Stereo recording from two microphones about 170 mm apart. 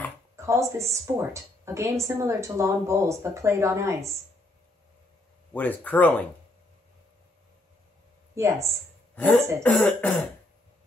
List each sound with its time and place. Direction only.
0.4 s a woman's voice: 15° right (ahead or behind)
5.5 s speech: 10° left (ahead or behind)
8.4 s a woman's voice: 15° right (ahead or behind)
9.1 s speech: 10° left (ahead or behind)